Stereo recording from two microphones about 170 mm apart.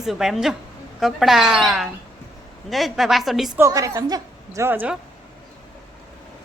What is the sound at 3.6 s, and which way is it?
A woman's voice, 20° right (ahead or behind).